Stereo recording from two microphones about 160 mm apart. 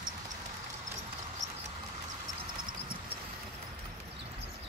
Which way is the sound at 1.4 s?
50° right (ahead or behind).